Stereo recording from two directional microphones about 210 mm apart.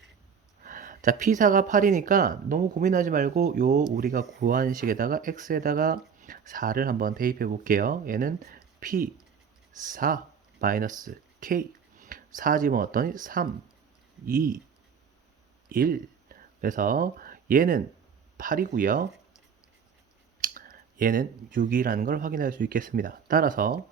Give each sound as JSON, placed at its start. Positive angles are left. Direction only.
{"t": 0.6, "sound": "speech", "side_deg": -40}
{"t": 15.7, "sound": "speech", "side_deg": -45}
{"t": 20.4, "sound": "speech", "side_deg": -40}